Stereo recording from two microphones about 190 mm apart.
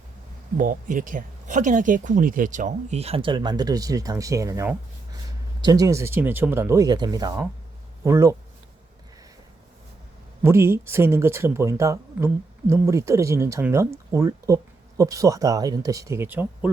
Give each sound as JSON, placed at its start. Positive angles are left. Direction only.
{"t": 0.5, "sound": "speech", "side_deg": -45}
{"t": 10.4, "sound": "speech", "side_deg": -15}